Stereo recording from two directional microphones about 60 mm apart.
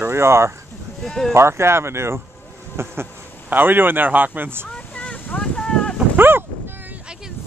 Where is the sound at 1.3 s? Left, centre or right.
Right.